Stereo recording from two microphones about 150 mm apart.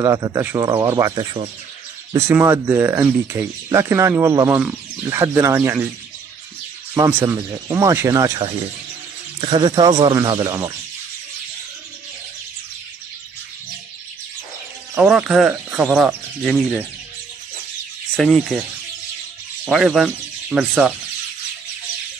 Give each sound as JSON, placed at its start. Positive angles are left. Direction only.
{"t": 0.0, "sound": "speech", "side_deg": -20}
{"t": 1.1, "sound": "speech", "side_deg": -35}
{"t": 2.1, "sound": "speech", "side_deg": -20}
{"t": 6.9, "sound": "speech", "side_deg": -15}
{"t": 9.4, "sound": "speech", "side_deg": -35}
{"t": 15.0, "sound": "speech", "side_deg": -5}
{"t": 18.1, "sound": "speech", "side_deg": 0}
{"t": 19.6, "sound": "speech", "side_deg": 0}